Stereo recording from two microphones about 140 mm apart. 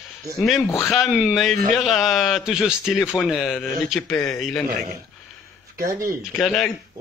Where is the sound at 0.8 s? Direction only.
Centre (ahead or behind).